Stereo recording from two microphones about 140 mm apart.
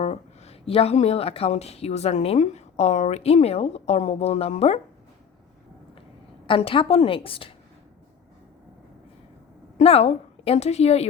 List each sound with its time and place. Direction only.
0.0 s speech: 45° left (ahead or behind)
6.5 s a woman's voice: 40° left (ahead or behind)
9.7 s a woman's voice: 45° left (ahead or behind)